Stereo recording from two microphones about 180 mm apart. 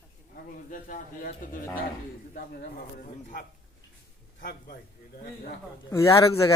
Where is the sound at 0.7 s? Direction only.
50° left (ahead or behind).